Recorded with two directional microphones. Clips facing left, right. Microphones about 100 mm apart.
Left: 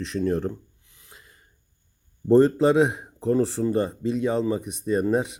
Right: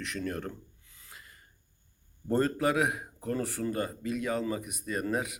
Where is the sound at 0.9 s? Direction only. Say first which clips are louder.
Left 1 dB; 20° left (ahead or behind).